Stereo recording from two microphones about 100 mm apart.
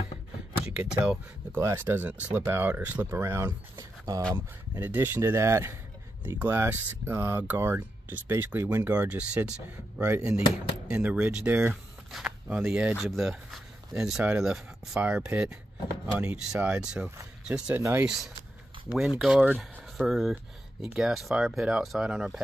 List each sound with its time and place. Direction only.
0.7 s speech: 15° right (ahead or behind); by 4.2 s 35° right (ahead or behind)
4.7 s speech: 20° right (ahead or behind)
13.0 s speech: centre (ahead or behind)